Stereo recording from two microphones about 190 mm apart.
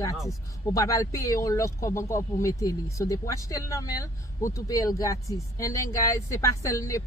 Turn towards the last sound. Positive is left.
turn(degrees=15)  # may be behind; listen again after turning